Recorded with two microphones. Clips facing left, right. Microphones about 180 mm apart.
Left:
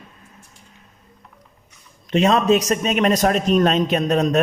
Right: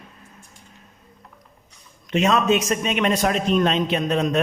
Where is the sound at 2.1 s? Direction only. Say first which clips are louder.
Left 3 dB; 35° left (ahead or behind).